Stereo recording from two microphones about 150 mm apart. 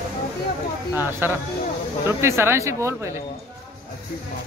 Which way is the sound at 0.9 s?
15° right (ahead or behind).